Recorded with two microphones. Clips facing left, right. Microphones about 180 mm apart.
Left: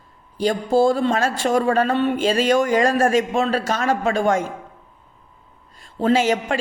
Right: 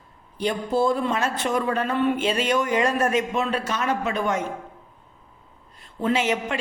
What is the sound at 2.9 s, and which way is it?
Speech, 90° left.